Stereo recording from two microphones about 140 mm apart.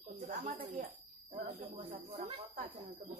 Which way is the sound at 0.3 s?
65° right (ahead or behind).